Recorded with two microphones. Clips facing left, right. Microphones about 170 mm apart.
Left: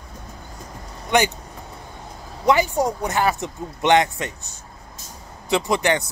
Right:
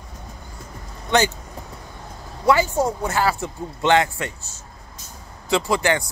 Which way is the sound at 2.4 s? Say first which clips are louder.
Even; 15° left (ahead or behind).